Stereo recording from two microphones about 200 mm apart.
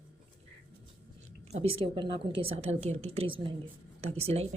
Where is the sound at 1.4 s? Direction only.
30° right (ahead or behind).